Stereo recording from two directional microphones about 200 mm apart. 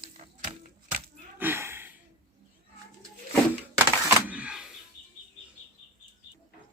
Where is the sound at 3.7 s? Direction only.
10° right (ahead or behind).